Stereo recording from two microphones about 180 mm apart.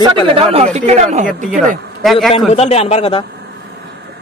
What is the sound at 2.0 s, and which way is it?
Speech, centre (ahead or behind).